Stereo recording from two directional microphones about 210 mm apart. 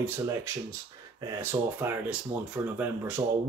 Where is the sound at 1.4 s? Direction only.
10° right (ahead or behind).